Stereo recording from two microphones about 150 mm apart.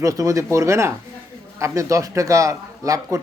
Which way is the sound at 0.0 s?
20° right (ahead or behind).